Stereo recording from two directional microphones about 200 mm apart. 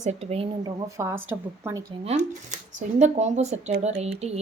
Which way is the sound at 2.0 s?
35° right (ahead or behind).